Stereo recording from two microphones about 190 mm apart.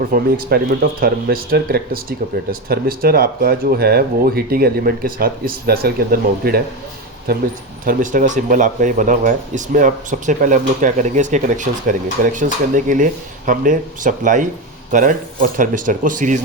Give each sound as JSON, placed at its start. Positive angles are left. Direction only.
{"t": 0.1, "sound": "speech", "side_deg": -50}